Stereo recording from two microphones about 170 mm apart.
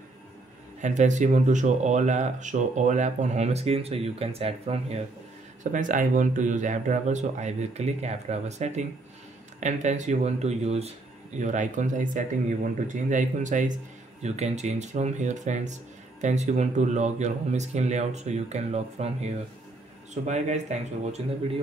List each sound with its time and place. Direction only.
0.7 s speech: 45° right (ahead or behind)
5.6 s speech: 50° right (ahead or behind)
20.7 s speech: 40° right (ahead or behind)